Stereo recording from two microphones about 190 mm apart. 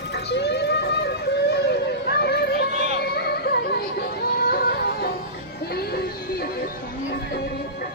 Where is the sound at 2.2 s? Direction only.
60° left (ahead or behind).